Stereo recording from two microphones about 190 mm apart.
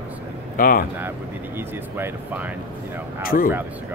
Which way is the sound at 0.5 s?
50° left (ahead or behind).